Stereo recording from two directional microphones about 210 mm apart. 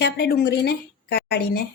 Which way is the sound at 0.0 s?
50° left (ahead or behind).